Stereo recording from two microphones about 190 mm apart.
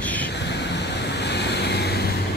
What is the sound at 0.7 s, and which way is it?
Vehicle, 65° left (ahead or behind).